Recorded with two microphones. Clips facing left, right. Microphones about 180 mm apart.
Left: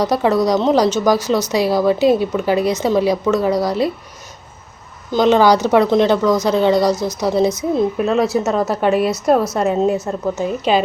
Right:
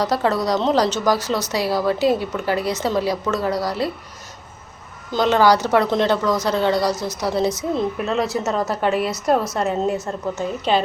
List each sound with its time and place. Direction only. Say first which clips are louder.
0.0 s a woman's voice: left 5 dB; 15° left (ahead or behind)
5.1 s a woman's voice: left 4 dB; 15° left (ahead or behind)
9.0 s a woman's voice: left 4 dB; 10° left (ahead or behind)